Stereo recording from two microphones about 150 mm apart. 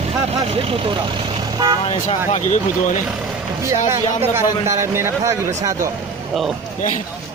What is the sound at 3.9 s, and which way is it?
Speech, 20° right (ahead or behind).